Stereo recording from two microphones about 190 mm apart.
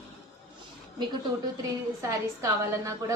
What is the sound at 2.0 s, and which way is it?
Speech, 15° right (ahead or behind).